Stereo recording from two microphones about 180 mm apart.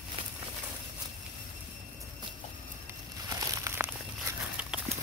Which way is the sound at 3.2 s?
20° right (ahead or behind).